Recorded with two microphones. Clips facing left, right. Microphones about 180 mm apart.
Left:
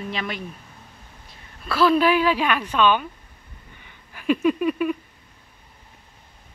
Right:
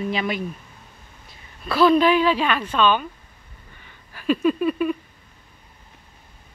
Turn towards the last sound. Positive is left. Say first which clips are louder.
# right 1 dB
turn(degrees=10)  # may be behind; listen again after turning